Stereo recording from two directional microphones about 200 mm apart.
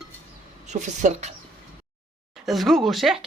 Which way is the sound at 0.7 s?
35° right (ahead or behind).